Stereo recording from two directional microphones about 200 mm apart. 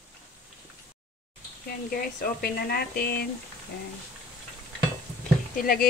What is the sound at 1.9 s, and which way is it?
Speech, 45° left (ahead or behind).